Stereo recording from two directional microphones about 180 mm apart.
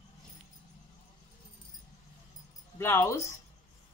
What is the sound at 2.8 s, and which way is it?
Speech, 15° left (ahead or behind).